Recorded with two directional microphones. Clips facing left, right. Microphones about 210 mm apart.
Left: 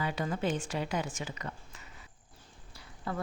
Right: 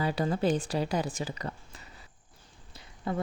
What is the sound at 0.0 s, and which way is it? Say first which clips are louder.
Speech: right 5 dB; 35° right (ahead or behind).